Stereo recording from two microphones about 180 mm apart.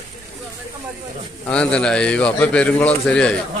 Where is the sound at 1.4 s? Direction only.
5° left (ahead or behind).